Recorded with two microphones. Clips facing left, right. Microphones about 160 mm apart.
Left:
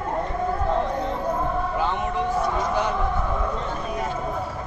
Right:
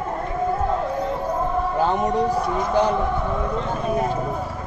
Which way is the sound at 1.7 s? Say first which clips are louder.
Right 5 dB; 40° right (ahead or behind).